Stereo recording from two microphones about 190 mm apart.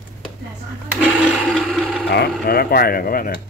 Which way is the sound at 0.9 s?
Centre (ahead or behind).